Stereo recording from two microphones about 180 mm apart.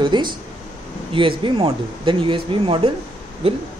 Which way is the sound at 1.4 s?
30° right (ahead or behind).